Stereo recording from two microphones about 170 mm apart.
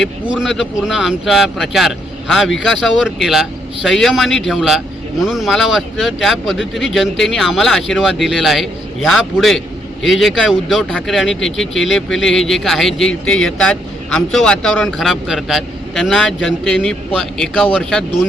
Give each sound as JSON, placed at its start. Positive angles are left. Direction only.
{"t": 0.0, "sound": "speech", "side_deg": -5}